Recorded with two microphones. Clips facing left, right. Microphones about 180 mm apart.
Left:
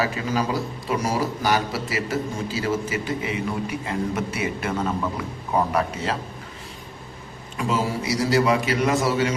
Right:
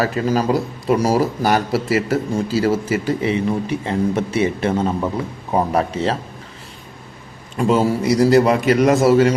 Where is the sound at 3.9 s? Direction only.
30° right (ahead or behind).